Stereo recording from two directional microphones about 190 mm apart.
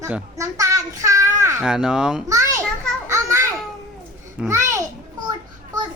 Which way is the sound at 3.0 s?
15° right (ahead or behind).